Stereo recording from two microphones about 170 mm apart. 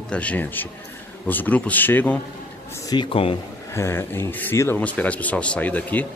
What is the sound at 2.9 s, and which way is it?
Speech, 30° left (ahead or behind).